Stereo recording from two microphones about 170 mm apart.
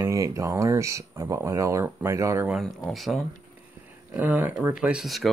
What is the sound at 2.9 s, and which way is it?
Speech, centre (ahead or behind).